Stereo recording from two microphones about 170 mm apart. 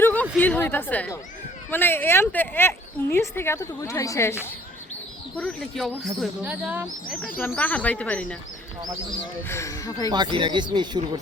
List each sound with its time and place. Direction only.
0.0 s a woman's voice: 10° left (ahead or behind)
5.4 s speech: 5° left (ahead or behind)
6.4 s speech: 10° right (ahead or behind)
7.3 s a woman's voice: 10° left (ahead or behind)
9.5 s a woman's voice: 15° left (ahead or behind)
10.1 s speech: 25° right (ahead or behind)